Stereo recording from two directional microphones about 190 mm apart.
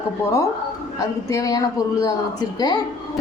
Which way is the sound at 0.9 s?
15° left (ahead or behind).